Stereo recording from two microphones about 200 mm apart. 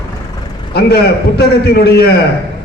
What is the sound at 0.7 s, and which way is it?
A man's voice, 55° left (ahead or behind).